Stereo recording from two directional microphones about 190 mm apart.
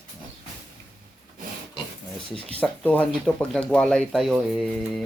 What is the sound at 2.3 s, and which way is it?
Speech, 30° right (ahead or behind).